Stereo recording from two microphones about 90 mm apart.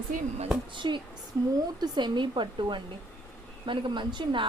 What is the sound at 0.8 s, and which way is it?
A woman's voice, 65° right (ahead or behind).